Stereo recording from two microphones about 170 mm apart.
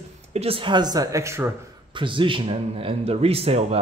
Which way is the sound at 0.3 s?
35° right (ahead or behind).